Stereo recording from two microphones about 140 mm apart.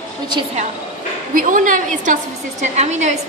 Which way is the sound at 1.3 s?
75° right (ahead or behind).